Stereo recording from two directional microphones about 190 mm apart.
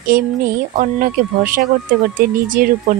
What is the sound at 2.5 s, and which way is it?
Speech, 45° right (ahead or behind).